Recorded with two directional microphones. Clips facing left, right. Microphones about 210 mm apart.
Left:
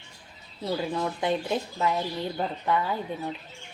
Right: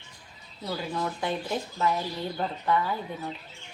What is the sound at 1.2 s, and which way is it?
Speech, 20° left (ahead or behind).